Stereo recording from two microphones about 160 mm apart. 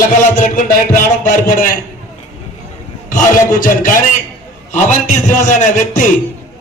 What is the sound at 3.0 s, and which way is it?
Speech, 55° left (ahead or behind).